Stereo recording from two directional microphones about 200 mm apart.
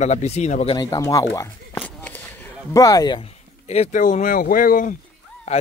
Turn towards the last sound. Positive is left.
turn(degrees=30)  # may be behind; listen again after turning